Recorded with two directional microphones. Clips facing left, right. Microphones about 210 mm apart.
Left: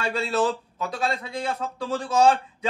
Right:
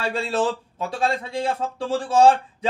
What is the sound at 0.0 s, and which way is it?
Speech, 30° right (ahead or behind).